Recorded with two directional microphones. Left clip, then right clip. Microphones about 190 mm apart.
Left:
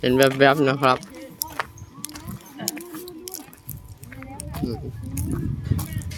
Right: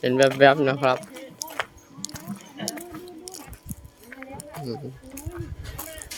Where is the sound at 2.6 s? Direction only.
60° right (ahead or behind).